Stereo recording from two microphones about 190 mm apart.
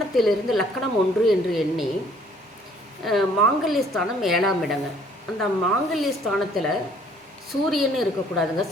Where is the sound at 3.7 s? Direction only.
Centre (ahead or behind).